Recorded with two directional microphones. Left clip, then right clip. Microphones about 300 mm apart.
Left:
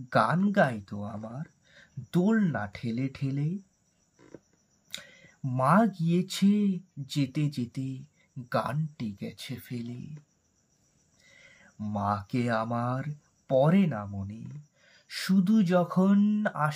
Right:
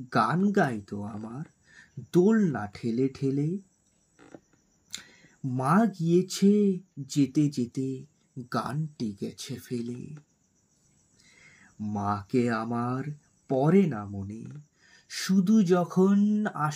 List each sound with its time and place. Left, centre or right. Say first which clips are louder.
0.1 s speech: even; left
2.1 s speech: right 4 dB; left
5.6 s speech: left 2 dB; left
11.9 s speech: right 1 dB; left
15.1 s speech: right 1 dB; left